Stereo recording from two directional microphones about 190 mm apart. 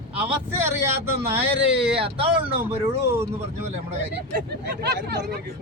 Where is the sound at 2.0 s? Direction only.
30° right (ahead or behind).